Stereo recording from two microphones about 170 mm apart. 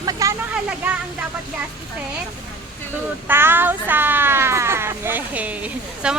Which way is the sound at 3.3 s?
15° right (ahead or behind).